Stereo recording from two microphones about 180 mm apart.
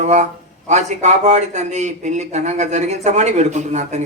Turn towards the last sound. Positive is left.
turn(degrees=-40)  # may be behind; listen again after turning